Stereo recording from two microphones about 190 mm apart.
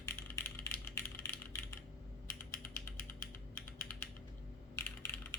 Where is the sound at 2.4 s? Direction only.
10° left (ahead or behind).